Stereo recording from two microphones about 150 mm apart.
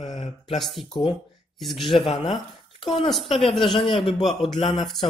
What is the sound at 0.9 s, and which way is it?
Mantra, 35° left (ahead or behind).